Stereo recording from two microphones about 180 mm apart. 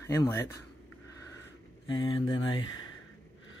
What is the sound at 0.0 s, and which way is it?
Speech, 15° left (ahead or behind).